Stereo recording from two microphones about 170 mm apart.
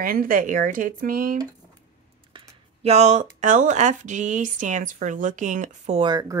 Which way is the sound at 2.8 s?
40° right (ahead or behind).